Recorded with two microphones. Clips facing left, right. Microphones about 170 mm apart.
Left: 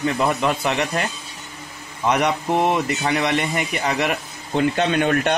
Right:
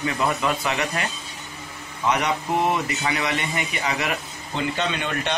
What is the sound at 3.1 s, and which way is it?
Speech, 50° left (ahead or behind).